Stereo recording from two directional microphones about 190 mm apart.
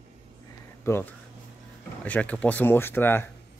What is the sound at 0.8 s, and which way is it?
Speech, 10° left (ahead or behind).